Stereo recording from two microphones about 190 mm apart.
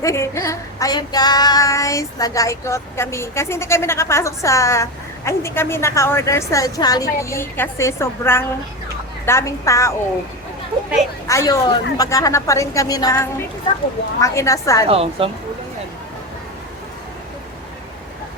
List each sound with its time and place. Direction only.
0.0 s child singing: 15° left (ahead or behind)
11.3 s child singing: 15° left (ahead or behind)
14.8 s speech: 30° right (ahead or behind)